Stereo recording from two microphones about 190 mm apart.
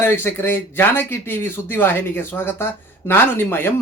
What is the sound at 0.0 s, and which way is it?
Speech, 10° left (ahead or behind).